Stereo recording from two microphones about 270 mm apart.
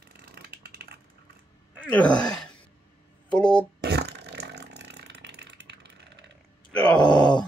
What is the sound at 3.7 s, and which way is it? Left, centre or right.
Fart, right.